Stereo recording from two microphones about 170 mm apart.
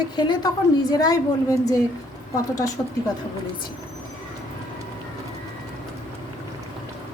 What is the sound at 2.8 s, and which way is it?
Speech, 10° left (ahead or behind).